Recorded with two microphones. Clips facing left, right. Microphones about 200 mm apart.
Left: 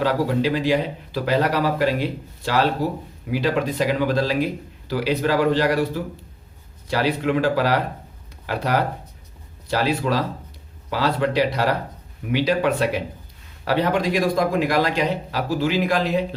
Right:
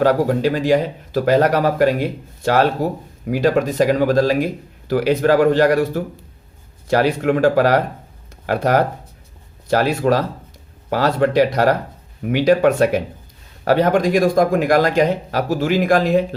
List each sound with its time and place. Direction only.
0.0 s speech: 45° right (ahead or behind)